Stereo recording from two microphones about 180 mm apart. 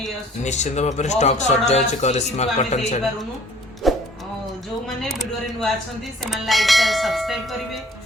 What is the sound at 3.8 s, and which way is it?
Music, centre (ahead or behind).